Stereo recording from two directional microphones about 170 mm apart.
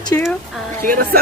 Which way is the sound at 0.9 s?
60° right (ahead or behind).